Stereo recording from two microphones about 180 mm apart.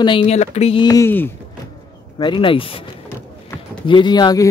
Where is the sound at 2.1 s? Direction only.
25° left (ahead or behind).